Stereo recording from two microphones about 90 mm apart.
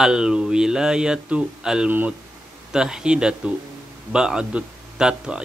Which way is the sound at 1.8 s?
20° right (ahead or behind).